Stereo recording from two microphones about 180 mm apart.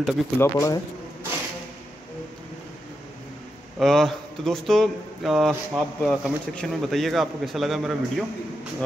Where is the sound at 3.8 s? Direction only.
Centre (ahead or behind).